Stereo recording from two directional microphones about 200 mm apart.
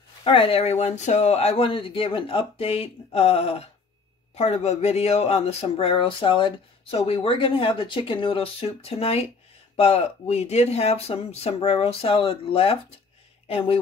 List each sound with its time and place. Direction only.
0.2 s speech: 30° left (ahead or behind)